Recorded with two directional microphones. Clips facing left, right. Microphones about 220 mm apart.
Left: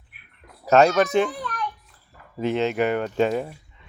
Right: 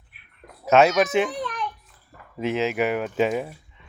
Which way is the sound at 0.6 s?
Centre (ahead or behind).